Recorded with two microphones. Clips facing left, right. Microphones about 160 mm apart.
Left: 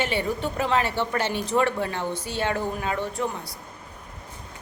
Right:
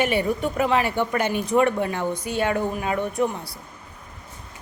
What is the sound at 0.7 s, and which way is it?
Speech, 10° right (ahead or behind).